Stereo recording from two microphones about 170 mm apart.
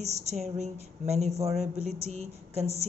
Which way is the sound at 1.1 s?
40° right (ahead or behind).